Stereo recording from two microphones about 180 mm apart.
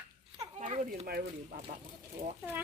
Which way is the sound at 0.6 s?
40° right (ahead or behind).